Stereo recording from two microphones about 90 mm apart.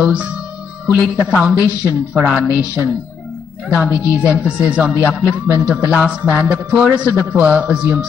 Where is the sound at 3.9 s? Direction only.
35° left (ahead or behind).